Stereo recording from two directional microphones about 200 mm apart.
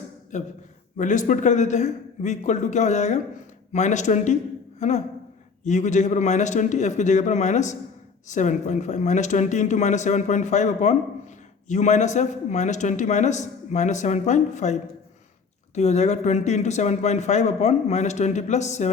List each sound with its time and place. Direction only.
0.3 s speech: 35° left (ahead or behind)